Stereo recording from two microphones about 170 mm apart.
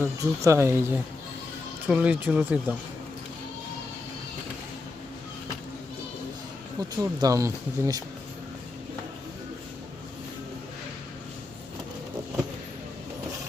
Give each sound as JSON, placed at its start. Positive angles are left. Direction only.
{"t": 0.0, "sound": "speech", "side_deg": -15}
{"t": 6.9, "sound": "speech", "side_deg": -20}